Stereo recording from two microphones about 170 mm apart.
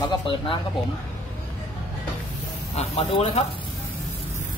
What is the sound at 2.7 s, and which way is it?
Speech, 35° left (ahead or behind).